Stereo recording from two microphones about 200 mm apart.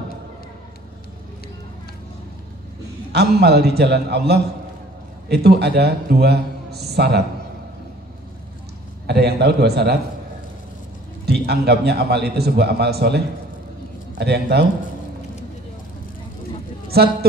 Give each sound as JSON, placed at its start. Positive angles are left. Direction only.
{"t": 3.1, "sound": "a man's voice", "side_deg": -55}
{"t": 9.0, "sound": "a man's voice", "side_deg": -55}
{"t": 11.2, "sound": "a man's voice", "side_deg": -55}
{"t": 16.9, "sound": "a man's voice", "side_deg": -50}